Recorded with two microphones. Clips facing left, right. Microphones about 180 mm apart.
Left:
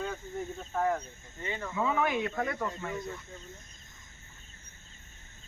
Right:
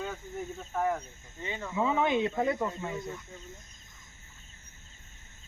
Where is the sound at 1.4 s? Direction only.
15° right (ahead or behind).